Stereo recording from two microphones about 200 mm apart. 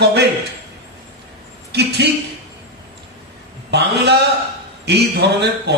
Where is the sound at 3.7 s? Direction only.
55° right (ahead or behind).